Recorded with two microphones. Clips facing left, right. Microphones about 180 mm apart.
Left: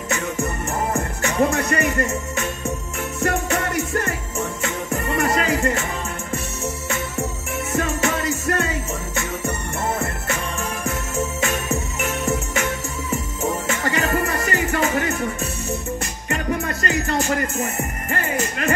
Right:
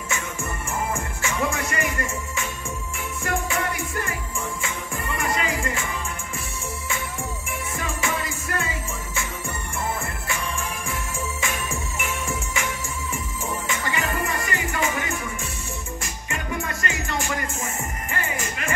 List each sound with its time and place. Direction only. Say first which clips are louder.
0.9 s music: left 7 dB; 40° left (ahead or behind)
7.7 s music: left 7 dB; 40° left (ahead or behind)